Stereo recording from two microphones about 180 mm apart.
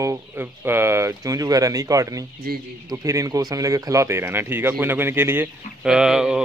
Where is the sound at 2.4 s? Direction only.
60° right (ahead or behind).